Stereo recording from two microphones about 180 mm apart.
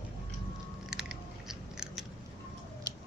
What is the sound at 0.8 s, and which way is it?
Scissors, 5° right (ahead or behind).